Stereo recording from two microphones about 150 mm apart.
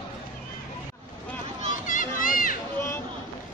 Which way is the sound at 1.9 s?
65° left (ahead or behind).